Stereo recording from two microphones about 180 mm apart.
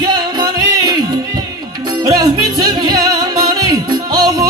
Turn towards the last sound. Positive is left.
turn(degrees=-20)  # may be behind; listen again after turning